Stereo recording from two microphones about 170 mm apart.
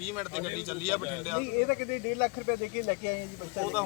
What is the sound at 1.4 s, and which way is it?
Speech, 65° left (ahead or behind).